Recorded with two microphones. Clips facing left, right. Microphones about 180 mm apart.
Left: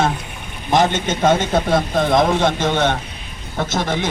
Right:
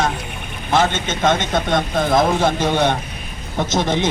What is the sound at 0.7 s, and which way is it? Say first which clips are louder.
Speech: left 2 dB; 15° left (ahead or behind).